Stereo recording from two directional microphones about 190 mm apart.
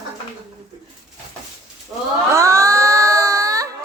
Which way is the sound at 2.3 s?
15° right (ahead or behind).